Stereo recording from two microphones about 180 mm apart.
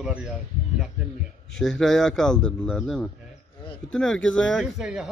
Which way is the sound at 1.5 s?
5° left (ahead or behind).